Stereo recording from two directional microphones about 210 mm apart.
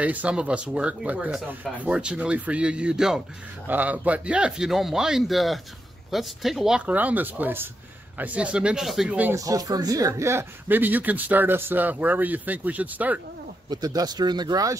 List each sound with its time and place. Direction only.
0.0 s speech: 5° right (ahead or behind)
13.7 s speech: 20° right (ahead or behind)